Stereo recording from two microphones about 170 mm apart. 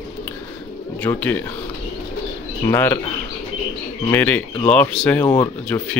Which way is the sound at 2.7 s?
15° left (ahead or behind).